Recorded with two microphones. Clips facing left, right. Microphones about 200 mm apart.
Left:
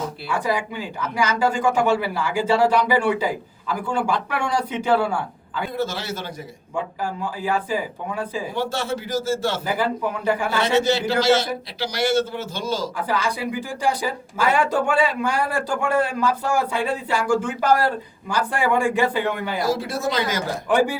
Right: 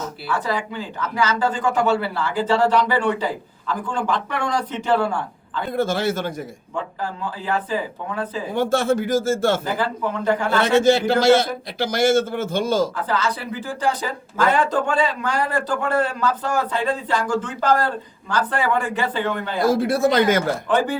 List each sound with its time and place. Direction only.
0.3 s speech: 10° left (ahead or behind)
5.7 s a man's voice: 50° right (ahead or behind)
6.7 s speech: 10° left (ahead or behind)
8.5 s a man's voice: 50° right (ahead or behind)
9.6 s speech: 10° left (ahead or behind)
10.6 s a man's voice: 50° right (ahead or behind)
13.0 s speech: 10° left (ahead or behind)
19.6 s speech: 55° right (ahead or behind)
20.7 s speech: 10° left (ahead or behind)